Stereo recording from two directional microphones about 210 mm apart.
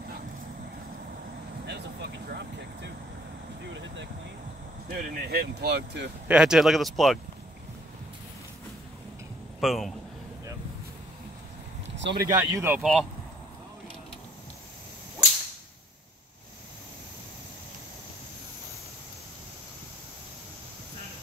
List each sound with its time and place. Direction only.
1.7 s vehicle: 55° right (ahead or behind)
3.7 s a sound: 60° right (ahead or behind)
5.0 s speech: 45° right (ahead or behind)
6.2 s speech: 5° right (ahead or behind)
9.6 s a man's voice: centre (ahead or behind)
11.9 s speech: 55° right (ahead or behind)
12.3 s speech: 15° right (ahead or behind)